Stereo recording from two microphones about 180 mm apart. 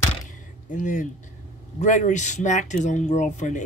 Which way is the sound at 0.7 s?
45° left (ahead or behind).